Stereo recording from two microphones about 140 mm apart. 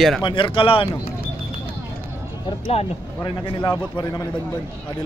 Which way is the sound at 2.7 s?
45° left (ahead or behind).